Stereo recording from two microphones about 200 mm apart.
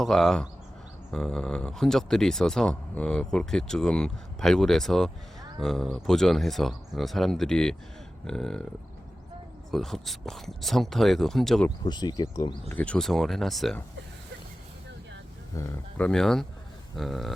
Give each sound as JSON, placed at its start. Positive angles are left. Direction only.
{"t": 0.0, "sound": "speech", "side_deg": 0}
{"t": 9.7, "sound": "speech", "side_deg": 0}
{"t": 11.9, "sound": "speech", "side_deg": 20}
{"t": 12.7, "sound": "speech", "side_deg": 5}
{"t": 15.5, "sound": "speech", "side_deg": 10}